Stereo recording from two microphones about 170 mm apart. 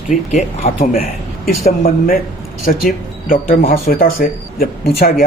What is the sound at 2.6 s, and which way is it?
Speech, 55° left (ahead or behind).